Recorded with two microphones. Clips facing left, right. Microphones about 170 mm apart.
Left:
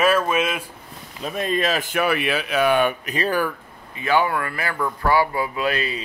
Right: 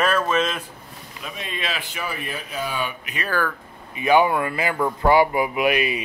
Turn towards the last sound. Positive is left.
turn(degrees=-15)  # may be behind; listen again after turning